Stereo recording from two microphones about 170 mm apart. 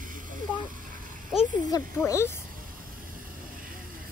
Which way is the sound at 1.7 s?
20° left (ahead or behind).